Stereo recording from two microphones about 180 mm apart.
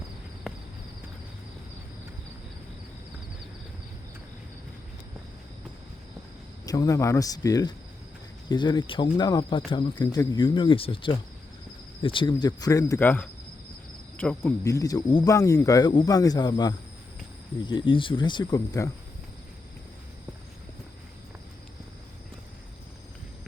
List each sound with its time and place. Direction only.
6.7 s speech: 20° left (ahead or behind)